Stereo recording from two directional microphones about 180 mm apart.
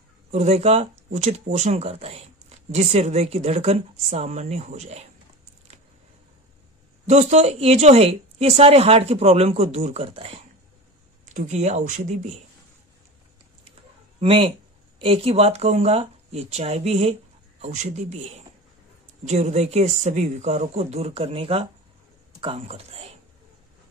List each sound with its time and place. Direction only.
0.3 s speech: 35° right (ahead or behind)
7.1 s speech: 40° right (ahead or behind)
14.2 s speech: 30° right (ahead or behind)
19.2 s speech: 40° right (ahead or behind)